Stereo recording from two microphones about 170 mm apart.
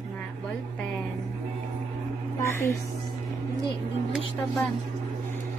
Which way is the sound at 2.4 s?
15° left (ahead or behind).